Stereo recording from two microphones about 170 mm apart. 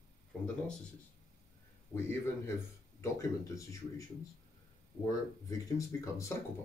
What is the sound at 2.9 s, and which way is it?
Speech, 20° left (ahead or behind).